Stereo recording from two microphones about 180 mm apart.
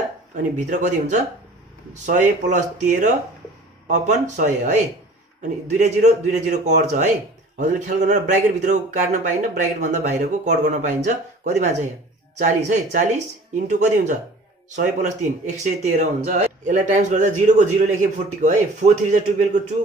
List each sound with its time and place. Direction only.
0.4 s speech: 45° right (ahead or behind)
5.8 s speech: 40° right (ahead or behind)